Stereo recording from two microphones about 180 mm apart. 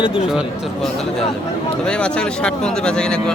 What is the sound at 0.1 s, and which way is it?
Speech, 5° right (ahead or behind).